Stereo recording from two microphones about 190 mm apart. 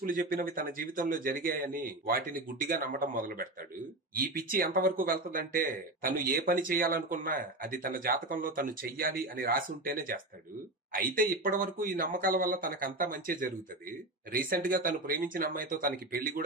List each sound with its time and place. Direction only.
0.0 s speech: 45° right (ahead or behind)